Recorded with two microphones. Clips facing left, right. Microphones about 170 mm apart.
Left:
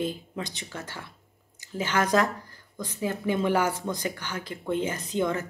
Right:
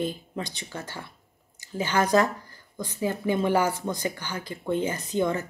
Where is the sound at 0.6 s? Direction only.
5° right (ahead or behind).